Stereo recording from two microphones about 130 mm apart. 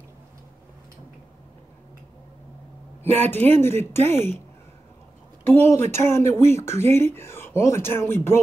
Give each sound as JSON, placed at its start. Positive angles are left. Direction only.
{"t": 3.2, "sound": "speech", "side_deg": 15}
{"t": 5.5, "sound": "speech", "side_deg": 15}